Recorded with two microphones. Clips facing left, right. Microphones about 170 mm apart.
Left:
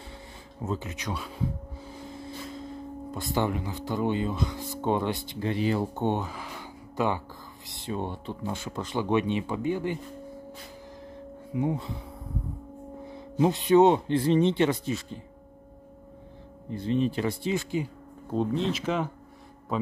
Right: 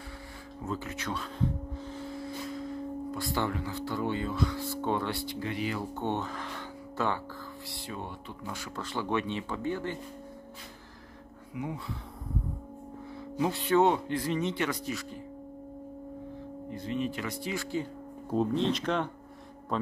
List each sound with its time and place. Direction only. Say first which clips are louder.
0.7 s speech: left 2 dB; 20° left (ahead or behind)
3.1 s speech: left 5 dB; 20° left (ahead or behind)
6.0 s speech: left 4 dB; 10° left (ahead or behind)
11.5 s speech: left 8 dB; 30° left (ahead or behind)
13.1 s speech: left 6 dB; 20° left (ahead or behind)
16.7 s speech: left 7 dB; 30° left (ahead or behind)
18.3 s speech: even; centre (ahead or behind)